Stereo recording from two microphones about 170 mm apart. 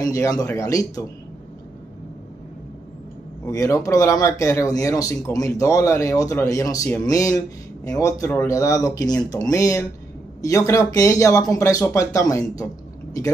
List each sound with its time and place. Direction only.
0.0 s speech: 20° left (ahead or behind)
3.4 s speech: 20° left (ahead or behind)